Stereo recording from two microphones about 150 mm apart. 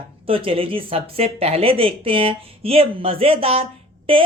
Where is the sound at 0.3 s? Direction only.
40° right (ahead or behind).